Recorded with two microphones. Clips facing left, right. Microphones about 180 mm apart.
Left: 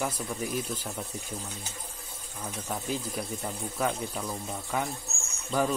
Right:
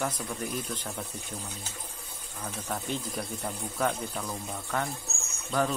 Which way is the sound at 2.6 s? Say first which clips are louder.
Left 1 dB; 5° left (ahead or behind).